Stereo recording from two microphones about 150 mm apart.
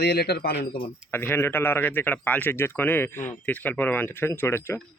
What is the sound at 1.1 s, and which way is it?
Speech, 15° left (ahead or behind).